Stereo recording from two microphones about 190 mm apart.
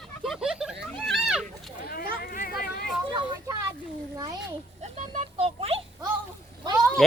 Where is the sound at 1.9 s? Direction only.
50° left (ahead or behind).